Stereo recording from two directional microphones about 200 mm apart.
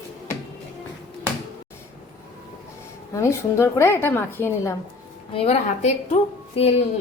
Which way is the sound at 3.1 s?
15° left (ahead or behind).